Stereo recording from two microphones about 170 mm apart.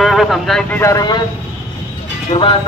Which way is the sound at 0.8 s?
20° left (ahead or behind).